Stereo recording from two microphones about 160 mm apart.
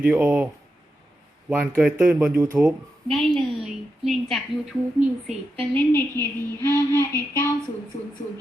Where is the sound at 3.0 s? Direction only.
Centre (ahead or behind).